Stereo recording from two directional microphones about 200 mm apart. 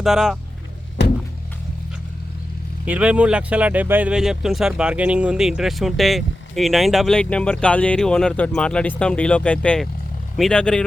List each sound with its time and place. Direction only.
0.0 s speech: centre (ahead or behind)
2.8 s speech: 5° right (ahead or behind)